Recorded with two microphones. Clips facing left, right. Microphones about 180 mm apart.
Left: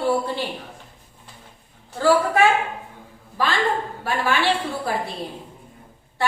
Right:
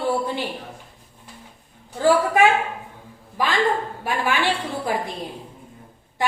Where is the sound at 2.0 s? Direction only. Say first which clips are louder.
Even; 15° right (ahead or behind).